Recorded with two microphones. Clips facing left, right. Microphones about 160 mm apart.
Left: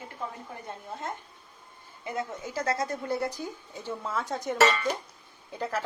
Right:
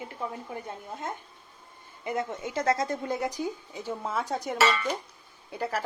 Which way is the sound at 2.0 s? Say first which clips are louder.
Right 3 dB; 20° right (ahead or behind).